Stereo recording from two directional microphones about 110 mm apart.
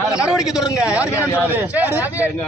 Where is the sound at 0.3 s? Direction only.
5° right (ahead or behind).